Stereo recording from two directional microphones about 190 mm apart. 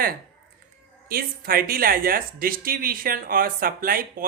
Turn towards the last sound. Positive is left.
turn(degrees=-50)  # may be behind; listen again after turning